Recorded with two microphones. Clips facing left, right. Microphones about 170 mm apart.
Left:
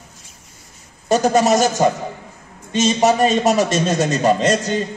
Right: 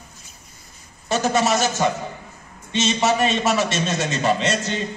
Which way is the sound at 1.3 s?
40° left (ahead or behind).